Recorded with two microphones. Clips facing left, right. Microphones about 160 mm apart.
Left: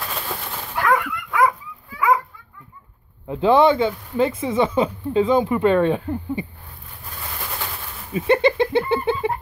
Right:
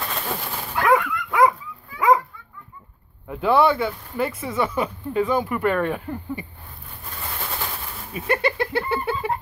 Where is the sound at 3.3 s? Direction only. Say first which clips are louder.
Left 3 dB; 25° left (ahead or behind).